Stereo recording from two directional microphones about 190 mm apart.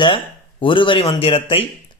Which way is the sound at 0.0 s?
25° left (ahead or behind).